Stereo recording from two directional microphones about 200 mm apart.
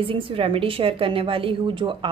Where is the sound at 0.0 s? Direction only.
25° right (ahead or behind).